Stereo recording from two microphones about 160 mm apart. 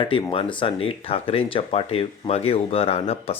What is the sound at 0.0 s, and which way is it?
Speech, 35° left (ahead or behind).